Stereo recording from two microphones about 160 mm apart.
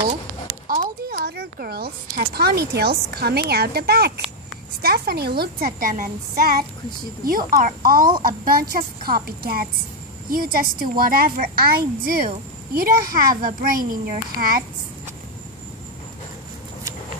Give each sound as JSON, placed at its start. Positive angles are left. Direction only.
{"t": 0.7, "sound": "a woman's voice", "side_deg": -65}